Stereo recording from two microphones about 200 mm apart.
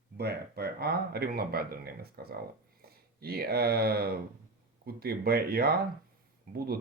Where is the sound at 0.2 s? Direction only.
55° right (ahead or behind).